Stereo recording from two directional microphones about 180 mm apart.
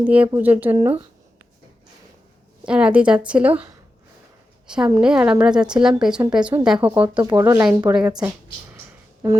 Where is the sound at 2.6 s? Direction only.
5° right (ahead or behind).